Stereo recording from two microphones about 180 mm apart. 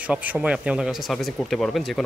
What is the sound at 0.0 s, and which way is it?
A man's voice, 10° right (ahead or behind).